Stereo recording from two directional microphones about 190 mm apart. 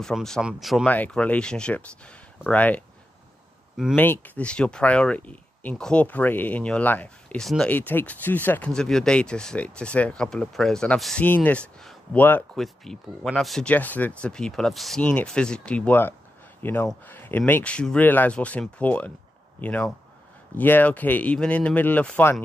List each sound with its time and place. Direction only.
0.0 s speech: 5° left (ahead or behind)
3.9 s speech: 10° left (ahead or behind)